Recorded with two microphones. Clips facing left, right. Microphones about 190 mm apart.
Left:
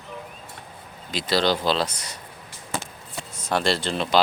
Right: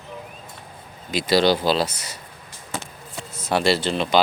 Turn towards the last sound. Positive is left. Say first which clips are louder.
# right 3 dB
turn(degrees=0)  # may be behind; listen again after turning